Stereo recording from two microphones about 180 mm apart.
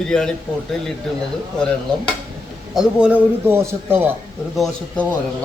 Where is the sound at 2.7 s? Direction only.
5° right (ahead or behind).